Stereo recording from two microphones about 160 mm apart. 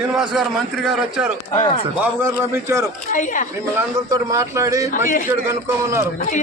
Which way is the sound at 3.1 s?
55° left (ahead or behind).